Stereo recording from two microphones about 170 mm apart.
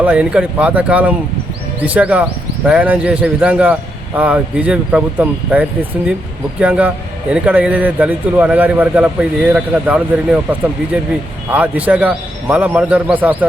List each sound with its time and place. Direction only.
0.0 s speech: 5° right (ahead or behind)
11.5 s speech: 10° right (ahead or behind)